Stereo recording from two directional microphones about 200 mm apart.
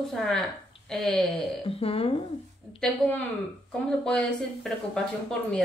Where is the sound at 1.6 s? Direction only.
30° left (ahead or behind).